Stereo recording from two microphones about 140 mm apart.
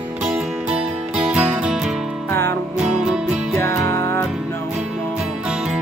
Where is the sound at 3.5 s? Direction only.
15° left (ahead or behind).